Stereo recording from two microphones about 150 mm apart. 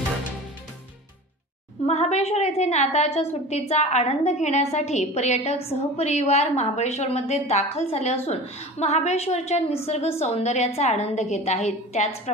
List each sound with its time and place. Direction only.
1.9 s a woman's voice: 45° left (ahead or behind)